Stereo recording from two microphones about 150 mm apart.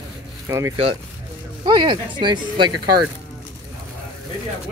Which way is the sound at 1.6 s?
30° right (ahead or behind).